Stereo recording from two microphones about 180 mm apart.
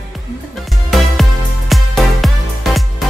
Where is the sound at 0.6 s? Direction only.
Centre (ahead or behind).